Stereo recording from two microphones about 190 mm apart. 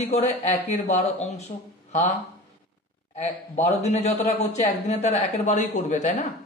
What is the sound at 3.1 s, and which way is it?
A man's voice, 35° left (ahead or behind).